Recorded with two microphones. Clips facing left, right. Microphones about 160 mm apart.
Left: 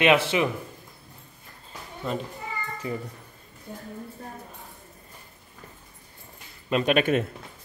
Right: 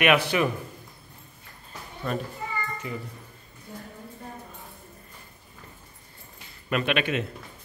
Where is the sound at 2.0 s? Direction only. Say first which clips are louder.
Even; 20° left (ahead or behind).